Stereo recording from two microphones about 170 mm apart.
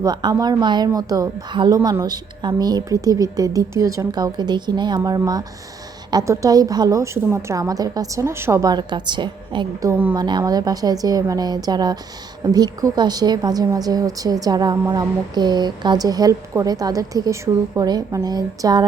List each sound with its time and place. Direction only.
0.0 s a woman's voice: 25° right (ahead or behind)